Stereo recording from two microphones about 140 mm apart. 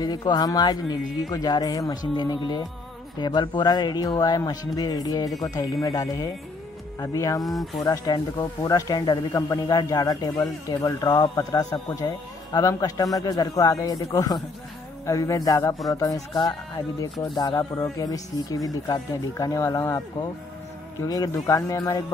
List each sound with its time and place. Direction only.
0.0 s speech: 30° left (ahead or behind)
7.4 s speech: centre (ahead or behind)
7.8 s speech: 25° left (ahead or behind)